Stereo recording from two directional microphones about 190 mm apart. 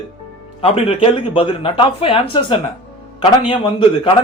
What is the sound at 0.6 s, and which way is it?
A man's voice, 30° left (ahead or behind).